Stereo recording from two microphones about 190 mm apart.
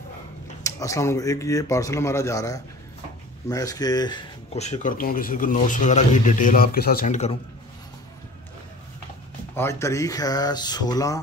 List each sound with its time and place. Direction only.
0.7 s speech: 15° left (ahead or behind)
4.6 s speech: 35° left (ahead or behind)
9.6 s speech: 15° left (ahead or behind)